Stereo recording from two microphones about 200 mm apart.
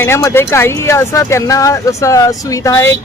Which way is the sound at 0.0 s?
15° left (ahead or behind).